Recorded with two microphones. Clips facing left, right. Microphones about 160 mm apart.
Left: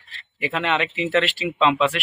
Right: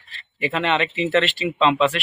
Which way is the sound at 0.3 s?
5° left (ahead or behind).